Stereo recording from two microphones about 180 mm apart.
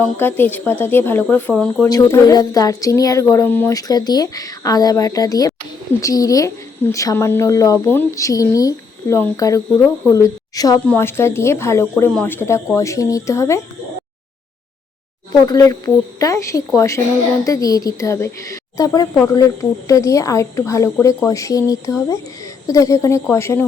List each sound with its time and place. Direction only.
0.2 s speech: 10° left (ahead or behind)
1.9 s a woman's voice: 20° left (ahead or behind)
15.4 s speech: 20° left (ahead or behind)